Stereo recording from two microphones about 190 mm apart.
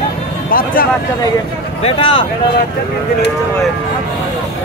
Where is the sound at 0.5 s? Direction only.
45° left (ahead or behind).